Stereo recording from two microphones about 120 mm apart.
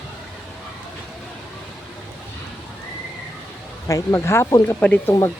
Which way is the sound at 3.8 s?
25° left (ahead or behind).